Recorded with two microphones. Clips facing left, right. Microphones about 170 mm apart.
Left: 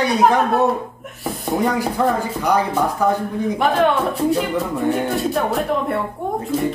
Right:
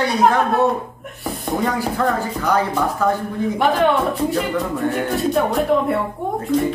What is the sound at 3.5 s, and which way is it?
Speech, centre (ahead or behind).